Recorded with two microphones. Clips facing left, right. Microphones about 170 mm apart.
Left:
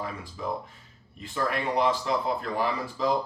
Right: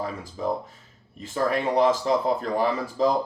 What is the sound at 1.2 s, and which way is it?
Speech, 40° right (ahead or behind).